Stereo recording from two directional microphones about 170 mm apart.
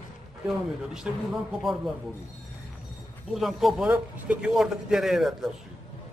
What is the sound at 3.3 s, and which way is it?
A man's voice, centre (ahead or behind).